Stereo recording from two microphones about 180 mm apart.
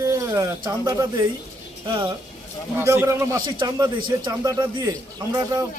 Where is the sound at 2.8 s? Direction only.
15° right (ahead or behind).